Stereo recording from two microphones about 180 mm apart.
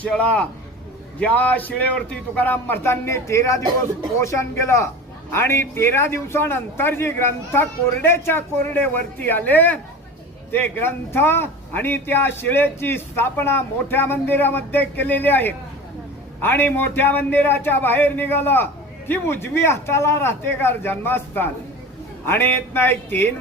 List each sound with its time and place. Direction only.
0.0 s a man's voice: 5° left (ahead or behind)